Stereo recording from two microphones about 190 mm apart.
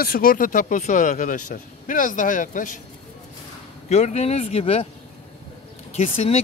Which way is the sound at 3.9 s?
35° left (ahead or behind).